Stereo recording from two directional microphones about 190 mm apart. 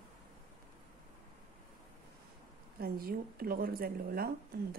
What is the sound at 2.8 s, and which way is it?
A woman's voice, 50° right (ahead or behind).